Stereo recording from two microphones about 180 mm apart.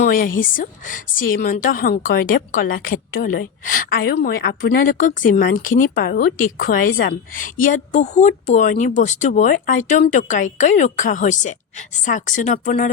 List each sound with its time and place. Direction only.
0.0 s a woman's voice: 50° left (ahead or behind)